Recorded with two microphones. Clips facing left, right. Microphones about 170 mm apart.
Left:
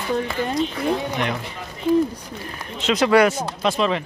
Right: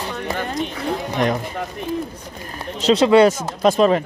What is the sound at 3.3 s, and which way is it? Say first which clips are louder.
Speech: right 5 dB; 45° right (ahead or behind).